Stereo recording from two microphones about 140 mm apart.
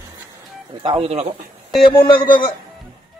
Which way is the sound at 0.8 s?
40° right (ahead or behind).